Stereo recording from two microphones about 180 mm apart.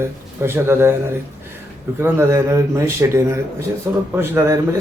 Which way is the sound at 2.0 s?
15° right (ahead or behind).